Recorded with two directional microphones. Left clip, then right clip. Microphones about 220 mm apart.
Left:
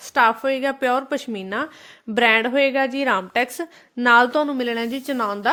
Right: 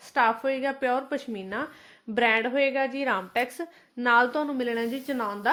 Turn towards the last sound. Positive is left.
turn(degrees=50)  # may be behind; listen again after turning